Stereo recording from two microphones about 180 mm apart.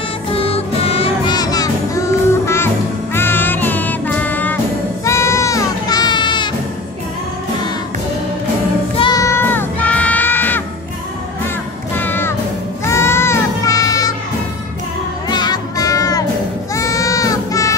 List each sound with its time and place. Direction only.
0.3 s music: 30° left (ahead or behind)
8.9 s music: 30° left (ahead or behind)
9.2 s sheep: 15° left (ahead or behind)
11.9 s music: 10° left (ahead or behind)
15.2 s music: 25° left (ahead or behind)